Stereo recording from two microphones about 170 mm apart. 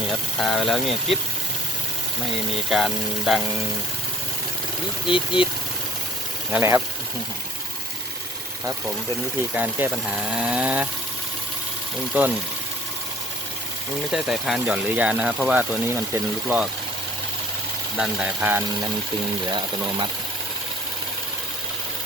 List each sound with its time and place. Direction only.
0.3 s speech: centre (ahead or behind)
2.6 s speech: centre (ahead or behind)
5.0 s speech: 30° left (ahead or behind)
6.5 s speech: 15° right (ahead or behind)
9.6 s speech: 10° right (ahead or behind)
14.1 s speech: centre (ahead or behind)
17.9 s speech: 5° right (ahead or behind)